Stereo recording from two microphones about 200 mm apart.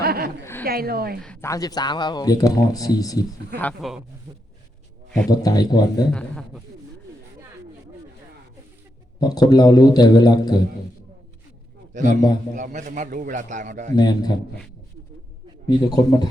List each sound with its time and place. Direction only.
0.0 s a sound: 50° right (ahead or behind)
0.6 s a woman's voice: 50° right (ahead or behind)
1.2 s speech: 10° left (ahead or behind)
3.6 s speech: 5° left (ahead or behind)
5.3 s a man's voice: 20° left (ahead or behind)
6.1 s speech: 5° left (ahead or behind)
9.2 s a man's voice: 20° left (ahead or behind)
11.9 s a man's voice: 40° right (ahead or behind)
13.9 s a man's voice: 20° left (ahead or behind)
15.6 s a man's voice: 20° left (ahead or behind)